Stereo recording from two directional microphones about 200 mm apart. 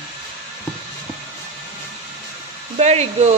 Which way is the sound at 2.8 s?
35° right (ahead or behind).